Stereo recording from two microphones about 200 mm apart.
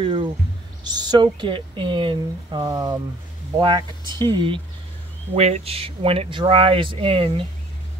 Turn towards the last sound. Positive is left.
turn(degrees=-25)  # may be behind; listen again after turning